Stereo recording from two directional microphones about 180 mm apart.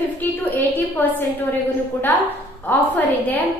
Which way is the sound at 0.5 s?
10° left (ahead or behind).